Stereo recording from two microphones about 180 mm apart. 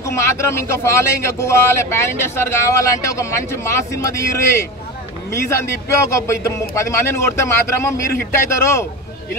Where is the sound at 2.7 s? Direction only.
20° left (ahead or behind).